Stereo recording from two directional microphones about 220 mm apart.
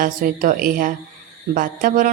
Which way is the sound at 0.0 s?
40° right (ahead or behind).